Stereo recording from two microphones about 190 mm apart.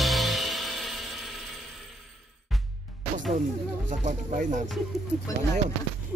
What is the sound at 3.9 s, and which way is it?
Speech, 40° right (ahead or behind).